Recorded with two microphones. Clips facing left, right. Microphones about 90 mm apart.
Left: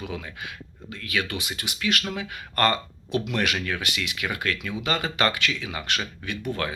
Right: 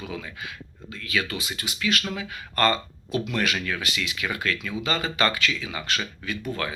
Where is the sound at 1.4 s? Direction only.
65° left (ahead or behind).